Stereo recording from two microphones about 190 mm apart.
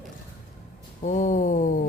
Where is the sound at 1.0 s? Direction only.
40° left (ahead or behind).